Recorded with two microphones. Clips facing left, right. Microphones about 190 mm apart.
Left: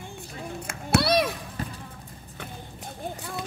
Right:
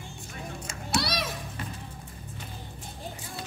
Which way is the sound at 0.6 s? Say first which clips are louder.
Left 6 dB; 60° left (ahead or behind).